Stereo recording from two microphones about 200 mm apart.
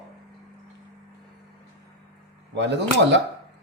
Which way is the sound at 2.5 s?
60° right (ahead or behind).